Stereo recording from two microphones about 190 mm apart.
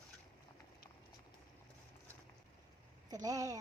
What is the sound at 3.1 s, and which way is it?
Speech, 20° right (ahead or behind).